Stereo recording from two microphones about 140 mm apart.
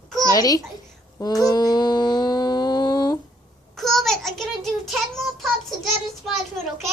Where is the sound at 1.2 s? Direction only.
25° left (ahead or behind).